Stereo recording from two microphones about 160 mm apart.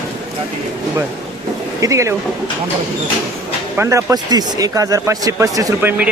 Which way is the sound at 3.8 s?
15° right (ahead or behind).